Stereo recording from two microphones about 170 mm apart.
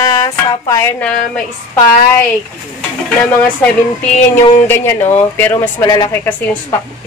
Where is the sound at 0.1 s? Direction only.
20° left (ahead or behind).